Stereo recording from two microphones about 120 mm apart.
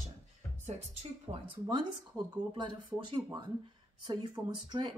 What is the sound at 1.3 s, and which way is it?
Speech, 45° right (ahead or behind).